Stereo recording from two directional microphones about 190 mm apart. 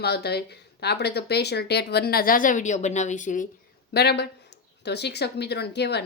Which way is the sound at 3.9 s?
60° left (ahead or behind).